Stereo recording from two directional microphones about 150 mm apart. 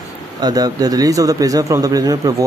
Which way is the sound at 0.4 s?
25° right (ahead or behind).